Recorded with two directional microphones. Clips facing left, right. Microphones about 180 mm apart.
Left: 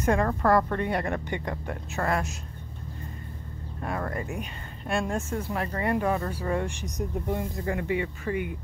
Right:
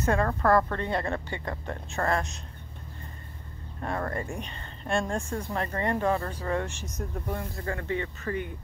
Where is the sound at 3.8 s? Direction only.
5° left (ahead or behind).